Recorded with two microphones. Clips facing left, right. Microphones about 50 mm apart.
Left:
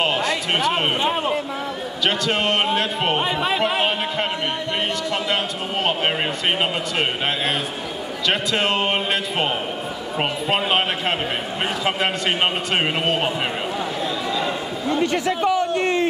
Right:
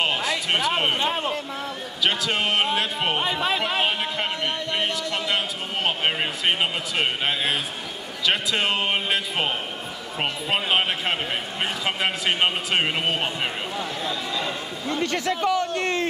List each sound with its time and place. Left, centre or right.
0.0 s a sound: centre
1.0 s a man's voice: centre
2.0 s speech: centre
6.6 s speech: centre
14.4 s a man's voice: centre